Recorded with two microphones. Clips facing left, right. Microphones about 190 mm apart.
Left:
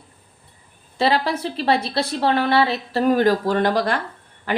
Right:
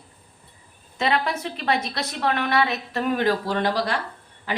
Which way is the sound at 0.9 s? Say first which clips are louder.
Left 4 dB; 35° left (ahead or behind).